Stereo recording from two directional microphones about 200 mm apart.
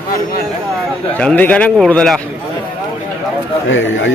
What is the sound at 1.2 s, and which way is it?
A man's voice, 5° left (ahead or behind).